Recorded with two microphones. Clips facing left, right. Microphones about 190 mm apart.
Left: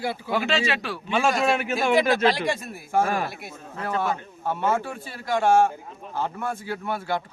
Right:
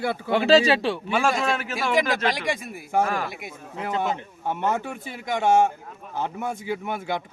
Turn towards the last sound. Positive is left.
turn(degrees=-15)  # may be behind; listen again after turning